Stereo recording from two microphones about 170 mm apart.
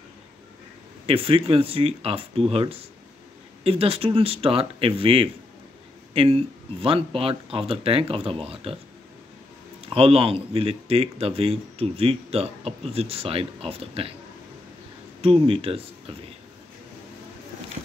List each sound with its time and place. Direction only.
1.0 s speech: 35° right (ahead or behind)
9.8 s speech: 35° right (ahead or behind)
15.2 s speech: 35° right (ahead or behind)